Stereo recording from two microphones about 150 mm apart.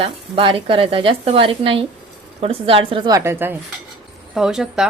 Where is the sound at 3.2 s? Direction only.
15° right (ahead or behind).